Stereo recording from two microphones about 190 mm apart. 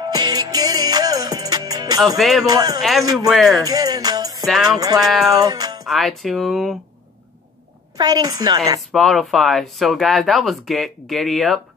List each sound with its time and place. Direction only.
0.0 s music: 20° right (ahead or behind)
2.0 s speech: centre (ahead or behind)
2.4 s a woman's voice: 20° right (ahead or behind)
2.8 s speech: centre (ahead or behind)
3.6 s music: 20° right (ahead or behind)
4.7 s a woman's voice: 20° right (ahead or behind)
5.3 s music: 20° right (ahead or behind)
5.9 s speech: centre (ahead or behind)
8.0 s a woman's voice: 20° right (ahead or behind)
8.9 s speech: centre (ahead or behind)